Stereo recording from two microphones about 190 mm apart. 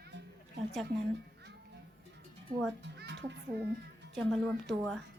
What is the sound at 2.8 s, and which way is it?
Speech, 65° right (ahead or behind).